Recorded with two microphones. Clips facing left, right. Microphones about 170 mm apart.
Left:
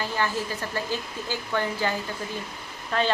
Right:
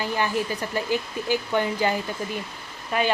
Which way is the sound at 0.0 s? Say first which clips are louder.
Right 3 dB; 15° right (ahead or behind).